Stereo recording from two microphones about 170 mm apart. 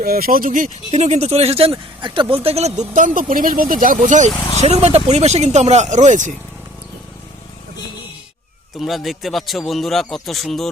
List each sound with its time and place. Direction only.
0.0 s speech: 60° right (ahead or behind)
8.8 s a man's voice: centre (ahead or behind)